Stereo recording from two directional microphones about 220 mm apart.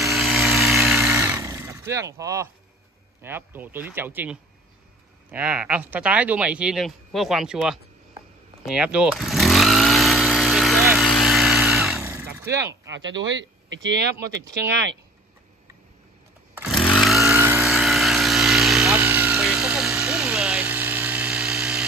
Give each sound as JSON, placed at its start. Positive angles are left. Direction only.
{"t": 0.0, "sound": "a sound", "side_deg": 0}
{"t": 3.2, "sound": "speech", "side_deg": -10}
{"t": 8.6, "sound": "vehicle", "side_deg": -5}
{"t": 12.0, "sound": "vehicle", "side_deg": -10}
{"t": 12.4, "sound": "speech", "side_deg": -15}
{"t": 12.9, "sound": "speech", "side_deg": -55}
{"t": 16.5, "sound": "chainsaw", "side_deg": 0}